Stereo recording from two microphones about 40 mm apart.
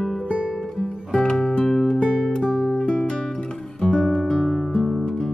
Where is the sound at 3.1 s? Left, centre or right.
Centre.